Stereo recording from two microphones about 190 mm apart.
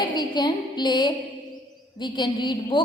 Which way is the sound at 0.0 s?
20° left (ahead or behind).